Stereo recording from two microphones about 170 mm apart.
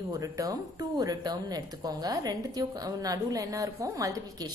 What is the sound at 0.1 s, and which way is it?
A woman's voice, 20° right (ahead or behind).